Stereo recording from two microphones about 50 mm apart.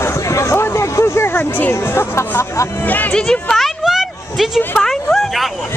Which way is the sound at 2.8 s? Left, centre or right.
Left.